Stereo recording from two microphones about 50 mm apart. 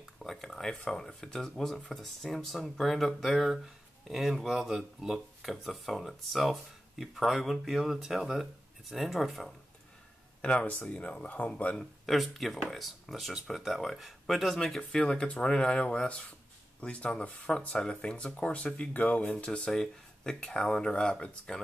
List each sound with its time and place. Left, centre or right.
0.2 s speech: centre
10.4 s speech: left
12.1 s speech: centre
14.8 s speech: centre
19.3 s speech: centre